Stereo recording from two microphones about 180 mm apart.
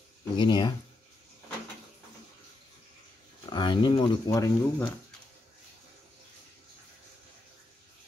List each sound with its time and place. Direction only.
0.4 s speech: 25° left (ahead or behind)
3.4 s speech: 25° left (ahead or behind)